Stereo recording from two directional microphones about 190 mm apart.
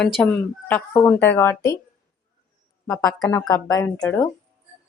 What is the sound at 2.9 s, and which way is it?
A woman's voice, 15° left (ahead or behind).